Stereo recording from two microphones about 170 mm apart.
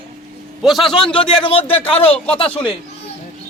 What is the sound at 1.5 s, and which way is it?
Speech, 35° left (ahead or behind).